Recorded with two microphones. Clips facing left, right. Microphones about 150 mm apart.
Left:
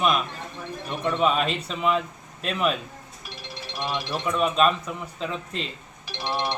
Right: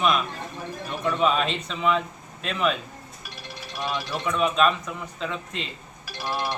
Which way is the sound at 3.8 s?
Centre (ahead or behind).